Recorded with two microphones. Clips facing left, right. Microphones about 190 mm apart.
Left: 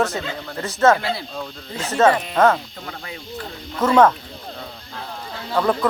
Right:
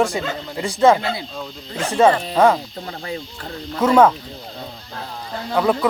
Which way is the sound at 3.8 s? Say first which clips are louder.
Right 1 dB; 10° right (ahead or behind).